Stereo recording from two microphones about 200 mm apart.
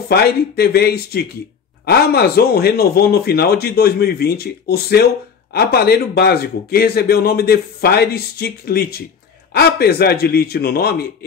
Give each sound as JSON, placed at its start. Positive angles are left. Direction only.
{"t": 0.1, "sound": "a man's voice", "side_deg": 50}